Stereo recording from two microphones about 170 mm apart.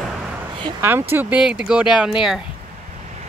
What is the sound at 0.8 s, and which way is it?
Speech, 15° right (ahead or behind).